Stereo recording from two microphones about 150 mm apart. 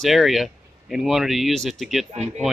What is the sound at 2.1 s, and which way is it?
Speech, 50° right (ahead or behind).